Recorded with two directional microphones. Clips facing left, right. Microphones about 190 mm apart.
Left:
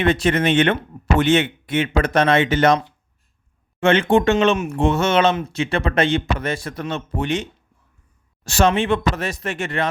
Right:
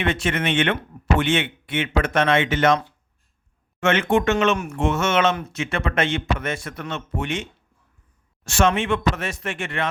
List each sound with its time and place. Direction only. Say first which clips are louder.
0.0 s speech: left 5 dB; 35° left (ahead or behind)
3.8 s speech: left 4 dB; 30° left (ahead or behind)
8.4 s speech: left 3 dB; 35° left (ahead or behind)